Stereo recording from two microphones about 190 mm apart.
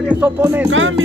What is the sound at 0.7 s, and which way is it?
Speech, 90° right.